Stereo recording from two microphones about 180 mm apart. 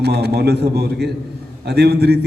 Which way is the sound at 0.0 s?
65° right (ahead or behind).